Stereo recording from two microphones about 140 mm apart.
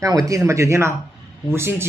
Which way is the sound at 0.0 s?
25° right (ahead or behind).